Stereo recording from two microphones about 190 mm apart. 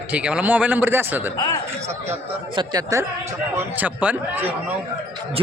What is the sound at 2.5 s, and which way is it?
Speech, 20° right (ahead or behind).